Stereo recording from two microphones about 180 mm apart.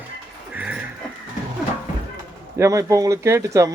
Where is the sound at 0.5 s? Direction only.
10° right (ahead or behind).